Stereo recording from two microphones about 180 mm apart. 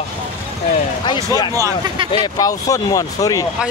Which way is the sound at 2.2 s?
20° left (ahead or behind).